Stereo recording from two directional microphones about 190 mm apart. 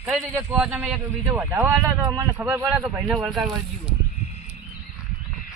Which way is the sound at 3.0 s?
Centre (ahead or behind).